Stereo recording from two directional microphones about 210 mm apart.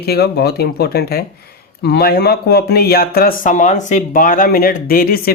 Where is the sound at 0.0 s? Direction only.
50° left (ahead or behind).